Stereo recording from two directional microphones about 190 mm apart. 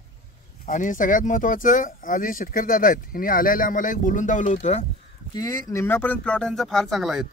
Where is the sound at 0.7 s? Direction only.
45° left (ahead or behind).